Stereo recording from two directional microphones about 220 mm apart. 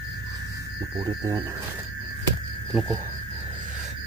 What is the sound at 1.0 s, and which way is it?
Speech, 15° right (ahead or behind).